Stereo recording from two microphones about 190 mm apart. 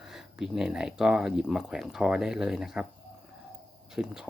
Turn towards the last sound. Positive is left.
turn(degrees=-5)  # may be behind; listen again after turning